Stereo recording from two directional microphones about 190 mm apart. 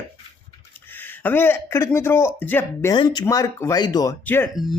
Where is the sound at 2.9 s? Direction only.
20° left (ahead or behind).